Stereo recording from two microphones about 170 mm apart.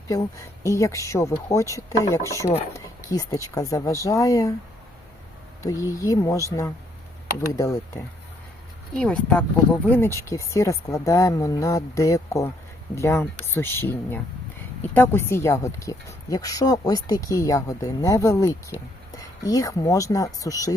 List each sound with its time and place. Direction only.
0.1 s a woman's voice: 20° left (ahead or behind)
5.9 s a woman's voice: 20° left (ahead or behind)
9.0 s a woman's voice: 5° left (ahead or behind)